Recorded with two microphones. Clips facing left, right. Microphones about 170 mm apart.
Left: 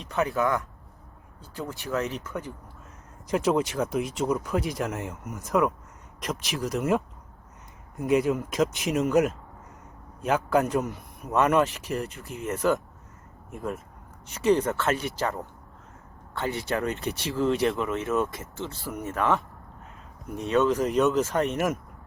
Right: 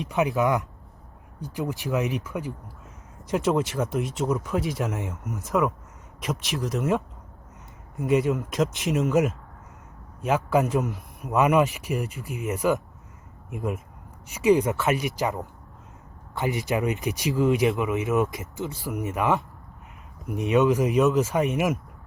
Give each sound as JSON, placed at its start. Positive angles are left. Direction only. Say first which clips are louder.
{"t": 0.1, "sound": "a man's voice", "louder": "right 2 dB", "side_deg": -15}